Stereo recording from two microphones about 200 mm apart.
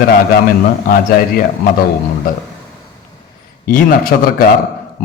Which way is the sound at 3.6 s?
45° left (ahead or behind).